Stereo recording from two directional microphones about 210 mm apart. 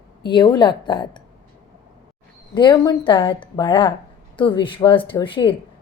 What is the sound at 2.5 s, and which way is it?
A woman's voice, 20° left (ahead or behind).